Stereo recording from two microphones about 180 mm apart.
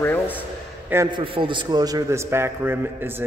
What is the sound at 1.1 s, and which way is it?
A man's voice, 30° right (ahead or behind).